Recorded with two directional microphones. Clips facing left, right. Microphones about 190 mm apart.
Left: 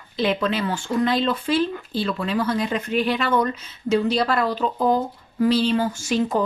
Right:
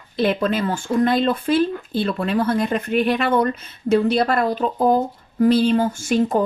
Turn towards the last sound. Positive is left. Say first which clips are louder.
# right 3 dB
turn(degrees=-50)  # may be behind; listen again after turning